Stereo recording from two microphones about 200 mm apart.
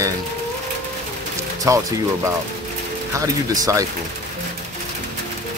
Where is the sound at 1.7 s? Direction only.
15° right (ahead or behind).